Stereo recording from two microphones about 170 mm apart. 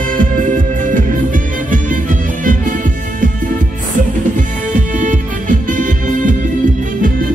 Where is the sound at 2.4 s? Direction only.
50° right (ahead or behind).